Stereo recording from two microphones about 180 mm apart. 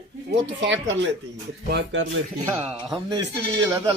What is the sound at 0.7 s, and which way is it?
Speech, 90° right.